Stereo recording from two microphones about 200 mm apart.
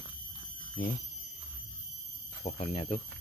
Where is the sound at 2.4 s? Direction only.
35° left (ahead or behind).